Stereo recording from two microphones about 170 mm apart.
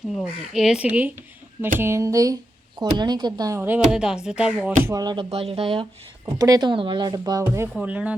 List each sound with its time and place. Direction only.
0.1 s speech: centre (ahead or behind)
4.8 s speech: 20° right (ahead or behind)
5.3 s speech: 35° right (ahead or behind); by 7.7 s 20° right (ahead or behind)
7.7 s speech: 5° right (ahead or behind)